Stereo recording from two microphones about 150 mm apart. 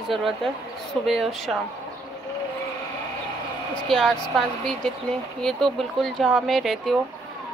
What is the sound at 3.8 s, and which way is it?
Speech, centre (ahead or behind).